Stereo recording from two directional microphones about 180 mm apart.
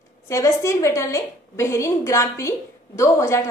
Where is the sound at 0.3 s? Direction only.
15° left (ahead or behind).